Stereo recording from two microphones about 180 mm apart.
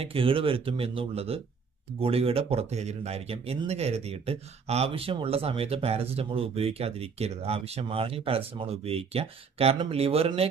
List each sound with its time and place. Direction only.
0.0 s speech: 30° right (ahead or behind)